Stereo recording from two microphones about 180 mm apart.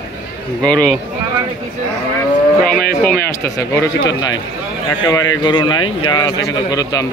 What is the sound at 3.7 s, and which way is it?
Speech, 20° left (ahead or behind).